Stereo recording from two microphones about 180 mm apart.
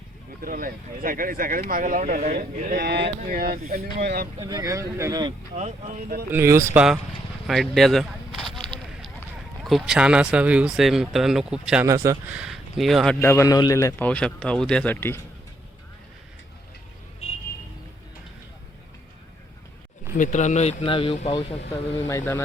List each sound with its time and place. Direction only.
0.4 s speech: 50° right (ahead or behind)
4.4 s speech: 20° right (ahead or behind)
5.5 s speech: 40° right (ahead or behind)
6.3 s speech: 15° right (ahead or behind)
7.4 s a sound: centre (ahead or behind)
9.6 s speech: centre (ahead or behind)
11.9 s speech: 15° right (ahead or behind); by 13.1 s centre (ahead or behind)
13.2 s a man's voice: 15° left (ahead or behind)
20.1 s a man's voice: 45° left (ahead or behind)
22.1 s a man's voice: 15° left (ahead or behind)